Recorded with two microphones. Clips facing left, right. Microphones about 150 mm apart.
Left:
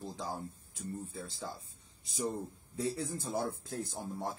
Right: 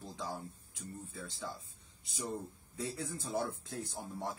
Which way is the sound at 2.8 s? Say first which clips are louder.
Left 4 dB; 35° left (ahead or behind).